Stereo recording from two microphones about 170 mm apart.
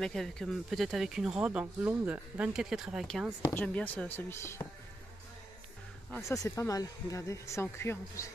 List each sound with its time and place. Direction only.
0.0 s speech: 5° left (ahead or behind)
3.4 s speech: 10° left (ahead or behind)
6.1 s speech: 15° left (ahead or behind)